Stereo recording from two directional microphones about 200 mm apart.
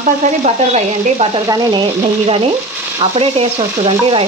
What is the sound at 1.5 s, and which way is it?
Frying, 20° right (ahead or behind).